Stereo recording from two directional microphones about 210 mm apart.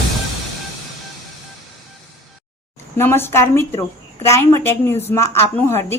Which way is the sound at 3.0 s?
10° left (ahead or behind).